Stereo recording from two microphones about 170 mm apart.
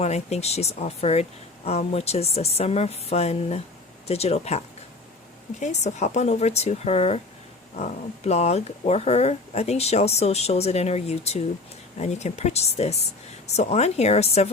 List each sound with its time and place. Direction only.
0.0 s speech: 40° left (ahead or behind)